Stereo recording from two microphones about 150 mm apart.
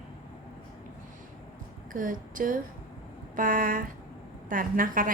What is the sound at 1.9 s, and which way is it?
A woman's voice, 65° right (ahead or behind).